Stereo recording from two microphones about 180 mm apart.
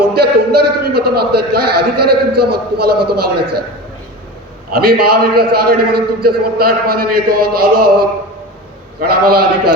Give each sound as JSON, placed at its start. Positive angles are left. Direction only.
{"t": 0.1, "sound": "a man's voice", "side_deg": -60}
{"t": 4.7, "sound": "a man's voice", "side_deg": -60}